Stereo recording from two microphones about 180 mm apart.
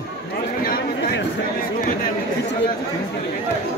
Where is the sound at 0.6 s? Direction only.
55° left (ahead or behind).